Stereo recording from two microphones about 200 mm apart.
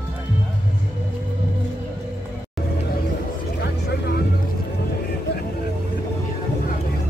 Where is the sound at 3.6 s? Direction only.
55° left (ahead or behind).